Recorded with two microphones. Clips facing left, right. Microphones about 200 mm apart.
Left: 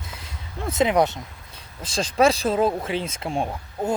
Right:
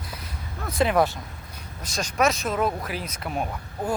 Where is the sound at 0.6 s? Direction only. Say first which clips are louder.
Left 2 dB; 25° left (ahead or behind).